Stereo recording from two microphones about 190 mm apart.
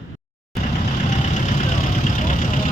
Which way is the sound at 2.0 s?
40° left (ahead or behind).